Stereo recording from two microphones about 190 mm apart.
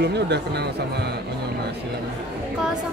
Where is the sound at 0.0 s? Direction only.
60° right (ahead or behind).